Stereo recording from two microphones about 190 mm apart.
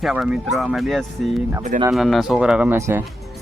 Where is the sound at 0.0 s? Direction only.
5° right (ahead or behind).